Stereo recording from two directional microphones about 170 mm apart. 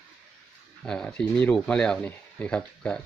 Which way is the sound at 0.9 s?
5° left (ahead or behind).